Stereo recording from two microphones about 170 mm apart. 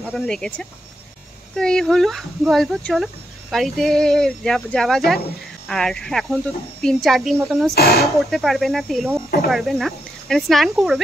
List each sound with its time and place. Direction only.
0.1 s speech: 5° left (ahead or behind)
7.7 s speech: 65° left (ahead or behind)
8.0 s speech: centre (ahead or behind)